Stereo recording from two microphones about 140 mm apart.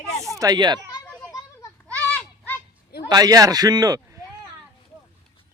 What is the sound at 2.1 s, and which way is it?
Goat, 15° left (ahead or behind).